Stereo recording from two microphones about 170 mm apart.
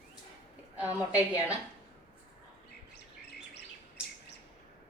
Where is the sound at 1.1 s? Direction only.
15° left (ahead or behind).